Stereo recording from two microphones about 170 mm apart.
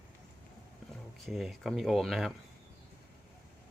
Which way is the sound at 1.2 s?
Centre (ahead or behind).